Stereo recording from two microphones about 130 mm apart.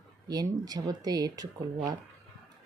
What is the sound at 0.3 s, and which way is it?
Speech, 30° right (ahead or behind).